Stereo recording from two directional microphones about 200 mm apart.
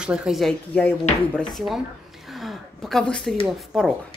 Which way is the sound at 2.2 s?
Centre (ahead or behind).